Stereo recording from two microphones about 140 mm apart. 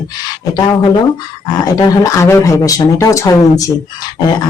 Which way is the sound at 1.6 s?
25° left (ahead or behind).